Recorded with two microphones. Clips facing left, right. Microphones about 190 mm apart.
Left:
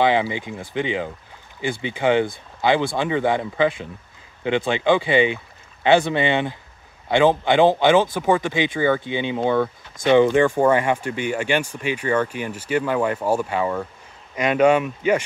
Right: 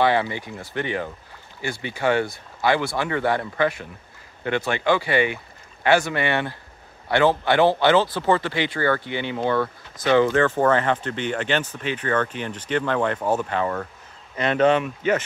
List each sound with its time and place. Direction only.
0.0 s speech: 15° left (ahead or behind)